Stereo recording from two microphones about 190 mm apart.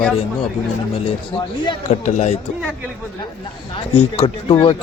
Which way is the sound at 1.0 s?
25° left (ahead or behind).